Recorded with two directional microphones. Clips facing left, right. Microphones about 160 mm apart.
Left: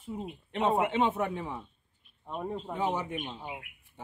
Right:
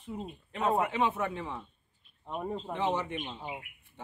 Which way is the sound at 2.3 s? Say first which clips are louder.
Even; centre (ahead or behind).